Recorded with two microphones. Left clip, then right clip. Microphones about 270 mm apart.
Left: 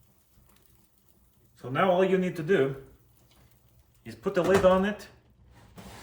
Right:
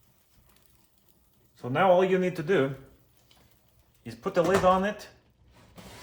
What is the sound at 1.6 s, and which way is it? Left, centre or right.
Speech, centre.